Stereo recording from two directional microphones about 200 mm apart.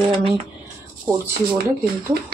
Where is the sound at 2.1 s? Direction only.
50° right (ahead or behind).